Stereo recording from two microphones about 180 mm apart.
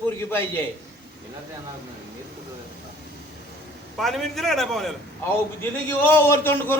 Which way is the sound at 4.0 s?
Centre (ahead or behind).